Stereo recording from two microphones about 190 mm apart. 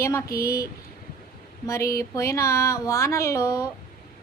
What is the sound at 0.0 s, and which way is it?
Speech, 15° left (ahead or behind).